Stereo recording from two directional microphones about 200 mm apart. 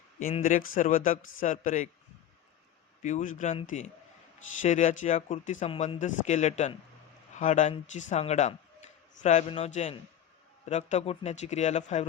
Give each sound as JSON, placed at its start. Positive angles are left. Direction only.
{"t": 0.4, "sound": "speech", "side_deg": 40}
{"t": 3.0, "sound": "speech", "side_deg": 40}